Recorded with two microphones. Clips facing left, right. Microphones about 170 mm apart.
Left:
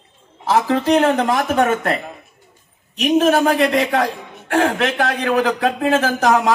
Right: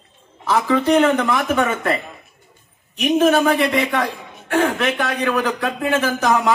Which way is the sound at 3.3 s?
35° left (ahead or behind).